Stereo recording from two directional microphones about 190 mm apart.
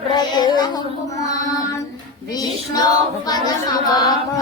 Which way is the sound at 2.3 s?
20° left (ahead or behind).